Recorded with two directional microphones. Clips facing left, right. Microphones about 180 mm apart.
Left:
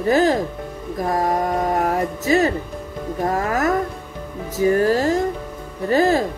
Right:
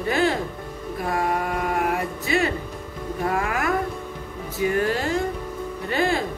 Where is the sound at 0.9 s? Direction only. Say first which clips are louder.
Left 4 dB; 40° left (ahead or behind).